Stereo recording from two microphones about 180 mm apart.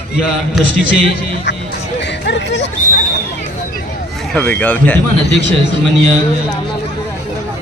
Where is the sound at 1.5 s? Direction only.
75° left (ahead or behind).